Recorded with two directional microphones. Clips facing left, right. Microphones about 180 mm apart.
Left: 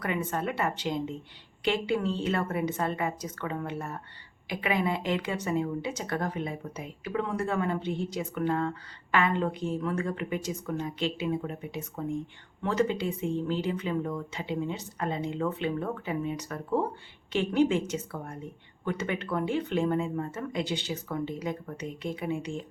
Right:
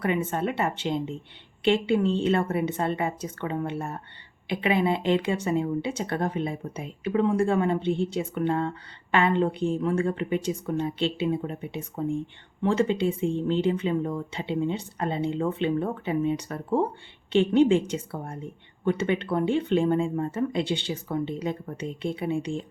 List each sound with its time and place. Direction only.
0.0 s speech: 25° right (ahead or behind)